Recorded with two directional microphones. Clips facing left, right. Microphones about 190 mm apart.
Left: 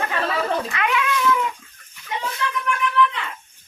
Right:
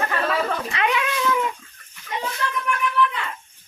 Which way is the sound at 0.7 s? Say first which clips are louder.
Even; 25° right (ahead or behind).